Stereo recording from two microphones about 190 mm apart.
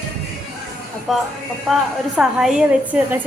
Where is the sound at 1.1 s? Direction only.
Centre (ahead or behind).